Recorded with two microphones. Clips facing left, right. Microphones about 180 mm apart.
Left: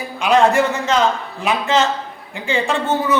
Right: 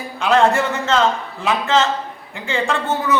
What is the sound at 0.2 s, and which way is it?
A man's voice, 15° left (ahead or behind).